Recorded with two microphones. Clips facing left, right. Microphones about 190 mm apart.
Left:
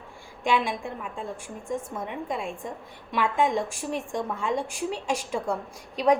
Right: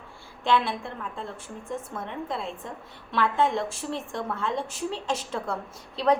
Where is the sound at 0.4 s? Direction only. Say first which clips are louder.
Even; 10° left (ahead or behind).